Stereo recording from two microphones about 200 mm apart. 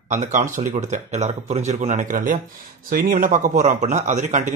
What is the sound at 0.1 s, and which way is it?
A man's voice, 40° right (ahead or behind).